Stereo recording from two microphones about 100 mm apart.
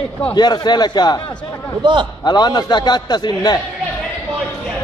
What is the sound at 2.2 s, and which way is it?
A man's voice, 45° left (ahead or behind).